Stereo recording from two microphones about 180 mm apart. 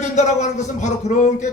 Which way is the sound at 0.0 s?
40° left (ahead or behind).